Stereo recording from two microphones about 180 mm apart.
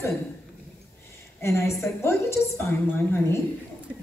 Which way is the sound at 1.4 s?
15° left (ahead or behind).